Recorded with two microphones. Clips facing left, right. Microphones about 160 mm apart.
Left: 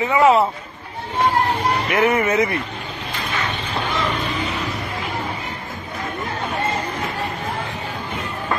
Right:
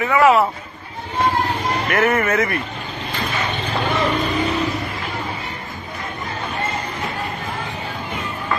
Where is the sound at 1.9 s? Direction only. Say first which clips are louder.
Right 1 dB; 15° left (ahead or behind).